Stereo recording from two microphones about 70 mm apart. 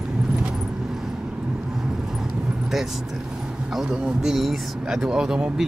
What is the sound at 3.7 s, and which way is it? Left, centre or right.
Speech, centre.